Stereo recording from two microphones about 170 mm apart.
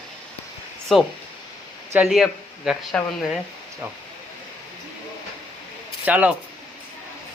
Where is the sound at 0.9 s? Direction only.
Centre (ahead or behind).